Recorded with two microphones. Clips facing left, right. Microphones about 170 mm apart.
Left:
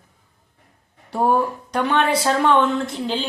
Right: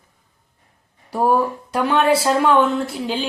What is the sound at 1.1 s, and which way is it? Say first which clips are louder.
Speech: right 1 dB; 5° right (ahead or behind).